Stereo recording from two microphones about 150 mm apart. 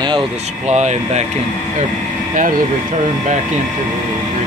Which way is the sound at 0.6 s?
50° right (ahead or behind).